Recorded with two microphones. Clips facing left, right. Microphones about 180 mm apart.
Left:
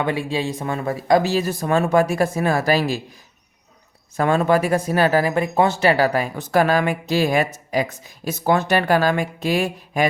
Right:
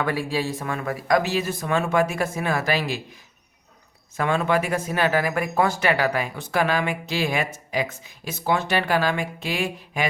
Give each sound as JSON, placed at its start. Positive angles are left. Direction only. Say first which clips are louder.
{"t": 0.0, "sound": "speech", "louder": "left 2 dB", "side_deg": 20}
{"t": 4.2, "sound": "speech", "louder": "left 5 dB", "side_deg": 40}